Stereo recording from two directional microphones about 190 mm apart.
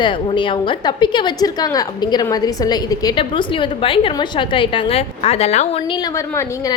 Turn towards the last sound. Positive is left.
turn(degrees=15)  # may be behind; listen again after turning